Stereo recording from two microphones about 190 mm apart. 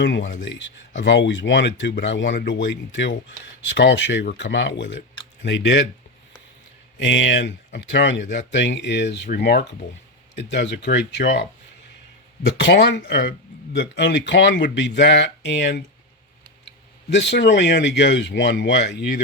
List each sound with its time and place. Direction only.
0.0 s speech: 80° left
7.0 s speech: 70° left (ahead or behind)
12.5 s speech: 65° left (ahead or behind)